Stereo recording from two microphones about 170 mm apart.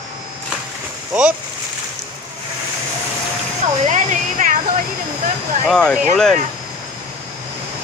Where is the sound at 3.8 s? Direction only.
45° right (ahead or behind).